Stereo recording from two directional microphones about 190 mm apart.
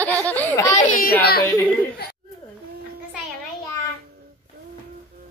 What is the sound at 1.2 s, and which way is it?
Speech, 55° left (ahead or behind).